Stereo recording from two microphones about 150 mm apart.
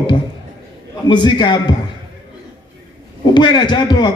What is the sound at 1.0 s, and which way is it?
Speech, 30° left (ahead or behind).